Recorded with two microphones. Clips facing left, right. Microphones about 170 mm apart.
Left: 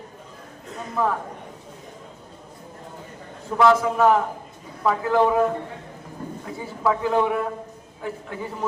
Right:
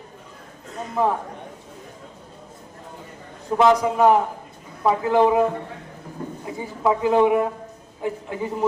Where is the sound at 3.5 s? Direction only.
20° right (ahead or behind).